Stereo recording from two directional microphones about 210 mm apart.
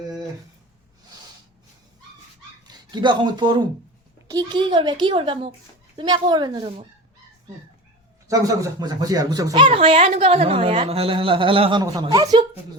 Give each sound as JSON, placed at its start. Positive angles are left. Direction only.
{"t": 2.6, "sound": "speech", "side_deg": -20}
{"t": 8.3, "sound": "speech", "side_deg": -15}